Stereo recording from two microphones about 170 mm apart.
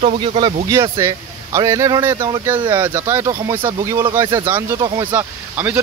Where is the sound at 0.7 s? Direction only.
15° right (ahead or behind).